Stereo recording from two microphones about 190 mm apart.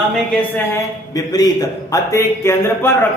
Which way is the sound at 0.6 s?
15° left (ahead or behind).